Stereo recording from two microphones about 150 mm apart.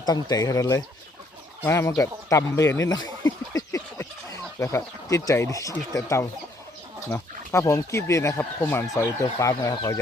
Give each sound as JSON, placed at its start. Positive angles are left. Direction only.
{"t": 0.0, "sound": "speech", "side_deg": 25}